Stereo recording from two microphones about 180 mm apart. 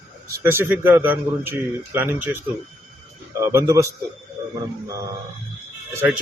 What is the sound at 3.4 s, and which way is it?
Speech, 15° right (ahead or behind).